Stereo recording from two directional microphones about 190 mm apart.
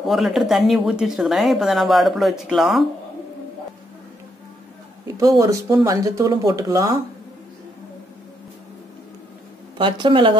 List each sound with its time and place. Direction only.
0.0 s speech: centre (ahead or behind)
5.0 s speech: 20° right (ahead or behind)
9.8 s speech: 25° right (ahead or behind)